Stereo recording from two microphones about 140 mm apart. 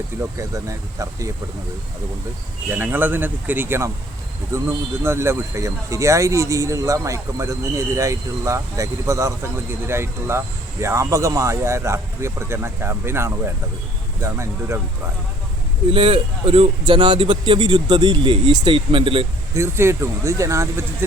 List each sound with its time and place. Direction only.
0.3 s speech: 20° right (ahead or behind)
2.6 s speech: 15° right (ahead or behind)
15.9 s a man's voice: 40° right (ahead or behind)
19.5 s speech: 20° right (ahead or behind)